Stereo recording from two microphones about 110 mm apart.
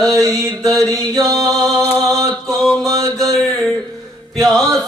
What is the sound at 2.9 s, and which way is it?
Mantra, 30° right (ahead or behind).